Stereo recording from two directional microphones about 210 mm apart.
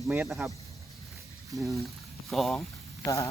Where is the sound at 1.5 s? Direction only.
Centre (ahead or behind).